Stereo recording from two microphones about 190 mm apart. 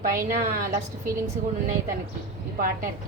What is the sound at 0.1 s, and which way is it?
A woman's voice, 50° right (ahead or behind).